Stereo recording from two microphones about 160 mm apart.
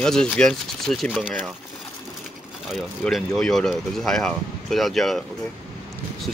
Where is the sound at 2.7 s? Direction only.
Centre (ahead or behind).